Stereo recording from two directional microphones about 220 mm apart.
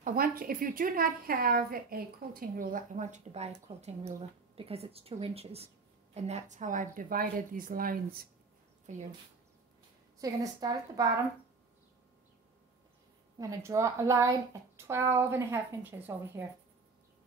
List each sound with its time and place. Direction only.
0.0 s a woman's voice: 40° right (ahead or behind)
10.2 s speech: 15° right (ahead or behind)
13.4 s speech: 15° right (ahead or behind)